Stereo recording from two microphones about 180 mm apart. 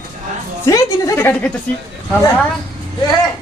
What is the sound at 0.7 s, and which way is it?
Speech, 15° left (ahead or behind).